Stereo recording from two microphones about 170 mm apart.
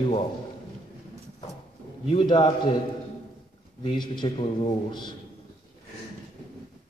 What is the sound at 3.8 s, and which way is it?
A man's voice, 25° left (ahead or behind).